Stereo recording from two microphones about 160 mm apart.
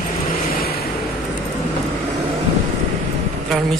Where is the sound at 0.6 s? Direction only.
75° left (ahead or behind).